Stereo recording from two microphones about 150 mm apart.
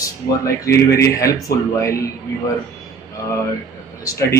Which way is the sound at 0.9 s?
20° left (ahead or behind).